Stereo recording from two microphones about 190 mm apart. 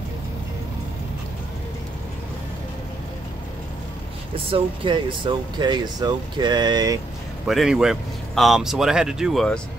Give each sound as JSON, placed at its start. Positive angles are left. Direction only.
{"t": 4.5, "sound": "speech", "side_deg": -25}
{"t": 7.4, "sound": "a man's voice", "side_deg": 0}